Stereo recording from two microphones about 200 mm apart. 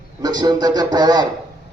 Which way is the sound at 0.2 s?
20° right (ahead or behind).